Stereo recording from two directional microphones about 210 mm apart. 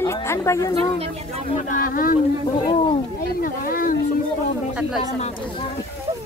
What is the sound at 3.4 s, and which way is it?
Speech, 40° left (ahead or behind).